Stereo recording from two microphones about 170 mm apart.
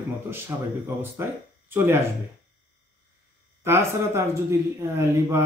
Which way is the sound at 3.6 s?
15° right (ahead or behind).